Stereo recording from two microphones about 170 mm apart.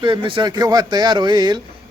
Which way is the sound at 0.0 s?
30° right (ahead or behind).